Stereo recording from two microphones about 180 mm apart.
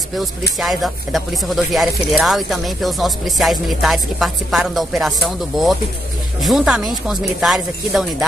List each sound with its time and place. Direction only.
0.6 s speech: centre (ahead or behind)